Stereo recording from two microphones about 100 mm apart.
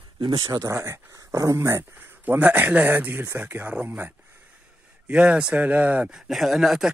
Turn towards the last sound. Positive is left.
turn(degrees=-5)  # may be behind; listen again after turning